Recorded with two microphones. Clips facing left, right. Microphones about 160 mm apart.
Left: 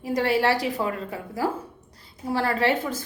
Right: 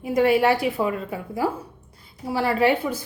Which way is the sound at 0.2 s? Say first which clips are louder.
Right 5 dB; 20° right (ahead or behind).